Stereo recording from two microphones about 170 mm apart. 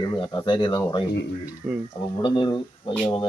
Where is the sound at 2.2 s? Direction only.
30° left (ahead or behind).